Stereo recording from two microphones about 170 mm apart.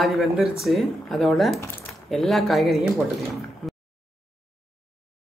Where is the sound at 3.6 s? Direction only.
Centre (ahead or behind).